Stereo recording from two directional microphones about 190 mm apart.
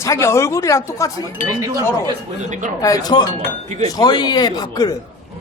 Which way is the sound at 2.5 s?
40° right (ahead or behind).